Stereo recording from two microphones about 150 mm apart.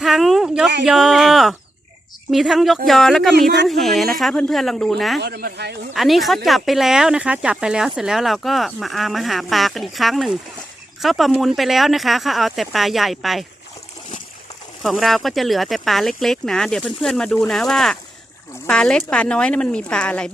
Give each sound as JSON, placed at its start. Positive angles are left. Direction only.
{"t": 0.0, "sound": "a sound", "side_deg": 0}
{"t": 2.3, "sound": "speech", "side_deg": 0}
{"t": 3.3, "sound": "speech", "side_deg": -90}
{"t": 3.7, "sound": "speech", "side_deg": 0}
{"t": 5.2, "sound": "speech", "side_deg": -85}
{"t": 5.9, "sound": "speech", "side_deg": 0}
{"t": 14.8, "sound": "speech", "side_deg": 0}